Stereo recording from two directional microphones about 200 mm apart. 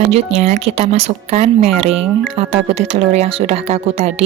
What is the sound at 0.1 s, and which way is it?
Speech, 30° right (ahead or behind).